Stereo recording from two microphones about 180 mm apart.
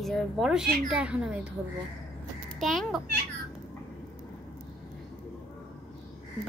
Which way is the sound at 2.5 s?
Centre (ahead or behind).